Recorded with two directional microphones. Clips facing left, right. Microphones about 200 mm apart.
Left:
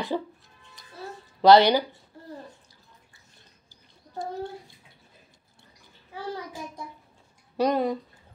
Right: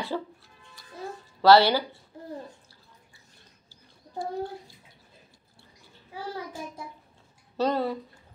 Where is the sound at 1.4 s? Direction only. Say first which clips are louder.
Left 2 dB; 20° left (ahead or behind).